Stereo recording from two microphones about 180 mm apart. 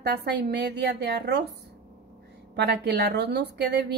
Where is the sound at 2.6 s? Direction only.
65° right (ahead or behind).